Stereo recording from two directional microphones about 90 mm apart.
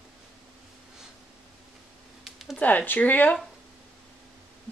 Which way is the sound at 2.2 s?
5° right (ahead or behind).